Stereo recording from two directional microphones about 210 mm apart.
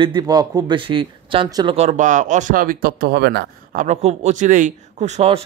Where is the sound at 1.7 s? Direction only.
35° right (ahead or behind).